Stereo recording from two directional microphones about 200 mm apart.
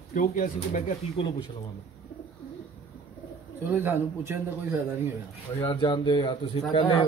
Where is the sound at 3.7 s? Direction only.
10° right (ahead or behind).